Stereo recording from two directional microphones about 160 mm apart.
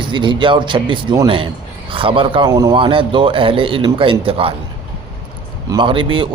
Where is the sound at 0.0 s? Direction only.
30° right (ahead or behind).